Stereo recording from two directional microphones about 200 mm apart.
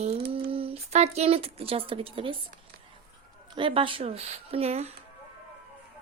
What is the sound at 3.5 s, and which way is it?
Speech, 25° right (ahead or behind).